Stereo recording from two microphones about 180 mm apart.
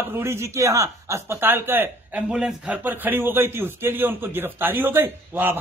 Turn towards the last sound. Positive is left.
turn(degrees=-10)  # may be behind; listen again after turning